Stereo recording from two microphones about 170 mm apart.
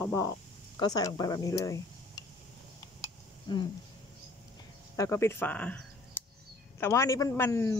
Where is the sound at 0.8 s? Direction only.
25° left (ahead or behind).